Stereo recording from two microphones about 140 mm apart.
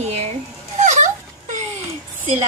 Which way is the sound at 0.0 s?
50° right (ahead or behind).